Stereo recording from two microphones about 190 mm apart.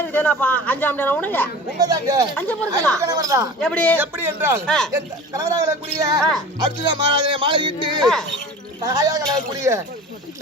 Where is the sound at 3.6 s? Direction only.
5° left (ahead or behind).